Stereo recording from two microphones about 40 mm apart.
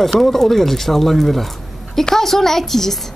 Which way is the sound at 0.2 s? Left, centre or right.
Centre.